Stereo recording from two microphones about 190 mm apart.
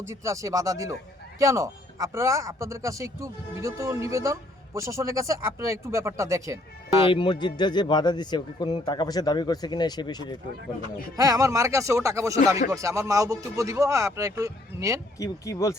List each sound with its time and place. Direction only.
0.0 s a man's voice: 15° right (ahead or behind)
7.1 s a man's voice: 25° left (ahead or behind)
11.2 s a man's voice: 15° right (ahead or behind)
15.2 s speech: 15° left (ahead or behind)